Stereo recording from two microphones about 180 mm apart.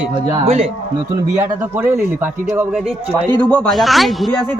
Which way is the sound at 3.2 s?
25° right (ahead or behind).